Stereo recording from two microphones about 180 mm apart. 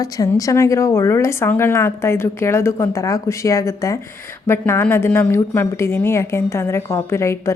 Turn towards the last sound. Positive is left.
turn(degrees=15)  # may be behind; listen again after turning